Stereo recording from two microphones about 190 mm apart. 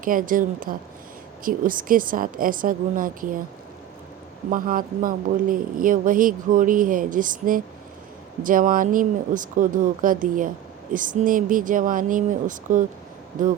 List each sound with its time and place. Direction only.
0.0 s speech: 45° right (ahead or behind)
4.4 s speech: 45° right (ahead or behind)